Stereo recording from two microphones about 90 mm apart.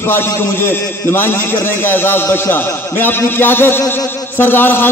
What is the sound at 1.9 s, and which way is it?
A man's voice, 25° left (ahead or behind).